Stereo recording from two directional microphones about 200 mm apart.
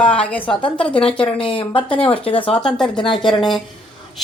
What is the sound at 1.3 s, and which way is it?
Speech, 25° left (ahead or behind).